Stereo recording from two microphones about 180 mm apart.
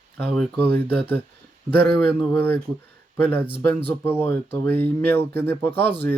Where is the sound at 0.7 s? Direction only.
60° right (ahead or behind).